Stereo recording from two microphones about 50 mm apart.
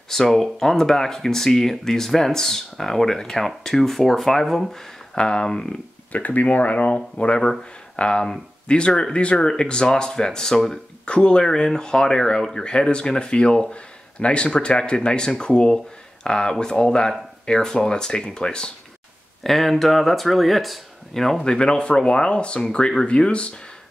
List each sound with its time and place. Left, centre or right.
0.1 s speech: centre
5.1 s speech: centre
6.1 s speech: left; by 18.7 s centre
19.4 s speech: centre; by 23.5 s left